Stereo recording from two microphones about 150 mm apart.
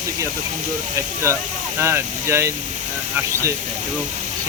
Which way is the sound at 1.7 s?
15° right (ahead or behind).